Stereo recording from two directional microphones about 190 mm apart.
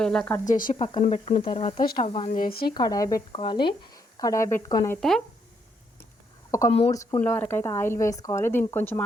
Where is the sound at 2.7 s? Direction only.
20° left (ahead or behind).